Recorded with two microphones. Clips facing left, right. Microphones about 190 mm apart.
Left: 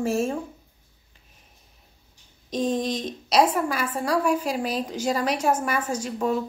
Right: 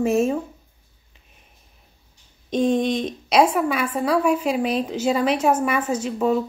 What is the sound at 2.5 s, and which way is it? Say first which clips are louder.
Speech: right 5 dB; 30° right (ahead or behind).